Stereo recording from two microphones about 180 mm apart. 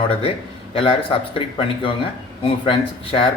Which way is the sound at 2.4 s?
30° left (ahead or behind).